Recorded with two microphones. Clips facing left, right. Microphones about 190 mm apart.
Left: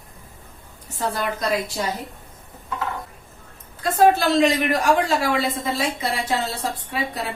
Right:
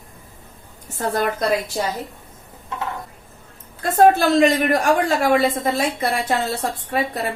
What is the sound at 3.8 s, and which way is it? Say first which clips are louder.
A woman's voice: right 3 dB; 55° right (ahead or behind).